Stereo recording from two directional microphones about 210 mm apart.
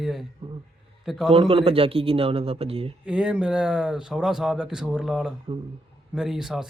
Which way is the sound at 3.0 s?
5° right (ahead or behind).